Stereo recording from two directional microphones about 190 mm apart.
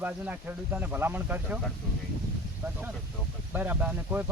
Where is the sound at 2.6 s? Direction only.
15° right (ahead or behind).